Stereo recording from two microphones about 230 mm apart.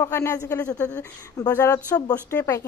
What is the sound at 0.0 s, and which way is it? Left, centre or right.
A woman's voice, centre.